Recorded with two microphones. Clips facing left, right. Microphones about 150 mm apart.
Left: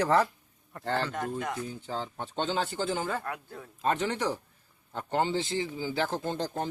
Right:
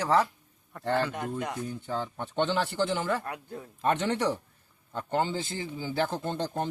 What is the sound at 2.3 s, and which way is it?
Speech, 65° right (ahead or behind).